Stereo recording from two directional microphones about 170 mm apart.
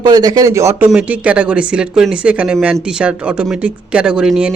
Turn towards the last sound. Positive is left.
turn(degrees=-5)  # may be behind; listen again after turning